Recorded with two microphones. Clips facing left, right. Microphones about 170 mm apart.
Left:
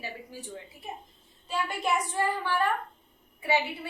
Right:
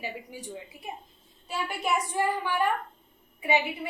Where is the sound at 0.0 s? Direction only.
15° right (ahead or behind).